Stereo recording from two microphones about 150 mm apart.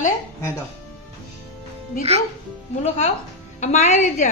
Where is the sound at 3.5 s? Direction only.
50° left (ahead or behind).